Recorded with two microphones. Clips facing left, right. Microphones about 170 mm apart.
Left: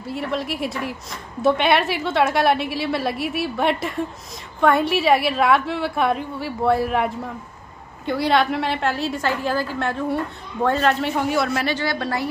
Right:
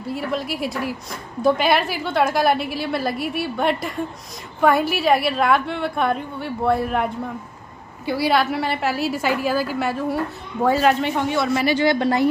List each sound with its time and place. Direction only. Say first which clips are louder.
0.0 s a woman's voice: right 1 dB; centre (ahead or behind); by 12.3 s 20° right (ahead or behind)